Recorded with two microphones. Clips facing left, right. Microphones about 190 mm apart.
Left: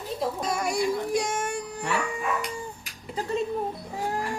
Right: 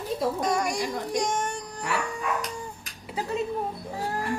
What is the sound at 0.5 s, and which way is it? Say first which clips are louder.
Speech: left 1 dB; 5° left (ahead or behind).